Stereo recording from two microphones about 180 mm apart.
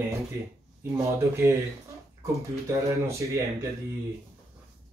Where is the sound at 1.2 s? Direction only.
15° right (ahead or behind).